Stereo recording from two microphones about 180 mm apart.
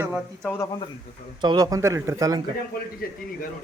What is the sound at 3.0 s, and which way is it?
Speech, 55° left (ahead or behind).